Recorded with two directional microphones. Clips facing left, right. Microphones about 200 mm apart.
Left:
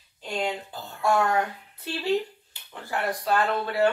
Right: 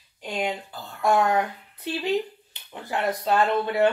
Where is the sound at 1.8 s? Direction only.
20° right (ahead or behind).